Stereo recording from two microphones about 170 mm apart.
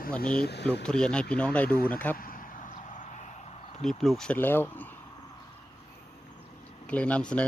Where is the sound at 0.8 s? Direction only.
5° left (ahead or behind).